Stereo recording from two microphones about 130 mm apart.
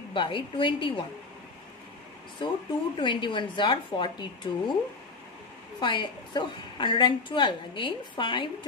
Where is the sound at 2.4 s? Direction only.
40° left (ahead or behind).